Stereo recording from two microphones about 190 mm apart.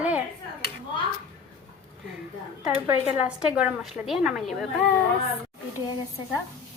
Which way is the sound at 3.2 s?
5° right (ahead or behind).